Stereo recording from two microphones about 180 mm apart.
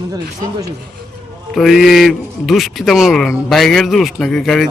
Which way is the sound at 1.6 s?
Centre (ahead or behind).